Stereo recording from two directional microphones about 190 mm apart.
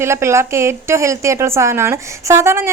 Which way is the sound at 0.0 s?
15° right (ahead or behind).